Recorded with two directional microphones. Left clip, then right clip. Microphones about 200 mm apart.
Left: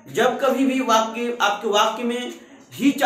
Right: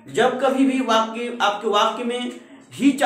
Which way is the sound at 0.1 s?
15° right (ahead or behind).